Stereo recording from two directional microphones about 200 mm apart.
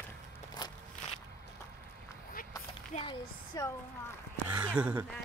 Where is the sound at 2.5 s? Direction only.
25° left (ahead or behind).